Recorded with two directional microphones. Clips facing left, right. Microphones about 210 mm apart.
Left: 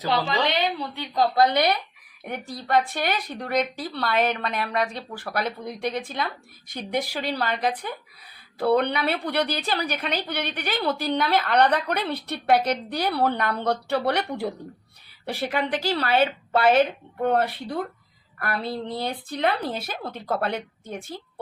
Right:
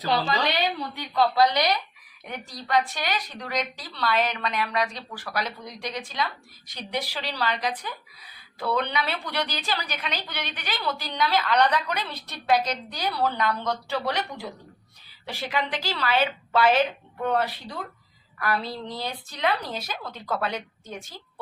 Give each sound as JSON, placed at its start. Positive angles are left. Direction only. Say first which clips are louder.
{"t": 0.0, "sound": "a woman's voice", "louder": "left 1 dB", "side_deg": 20}
{"t": 1.1, "sound": "a woman's voice", "louder": "left 1 dB", "side_deg": 45}